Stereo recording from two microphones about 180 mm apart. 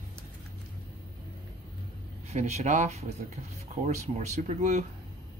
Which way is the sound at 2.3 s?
40° right (ahead or behind).